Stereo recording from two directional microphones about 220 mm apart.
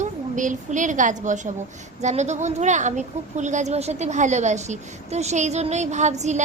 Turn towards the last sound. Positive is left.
turn(degrees=-30)  # may be behind; listen again after turning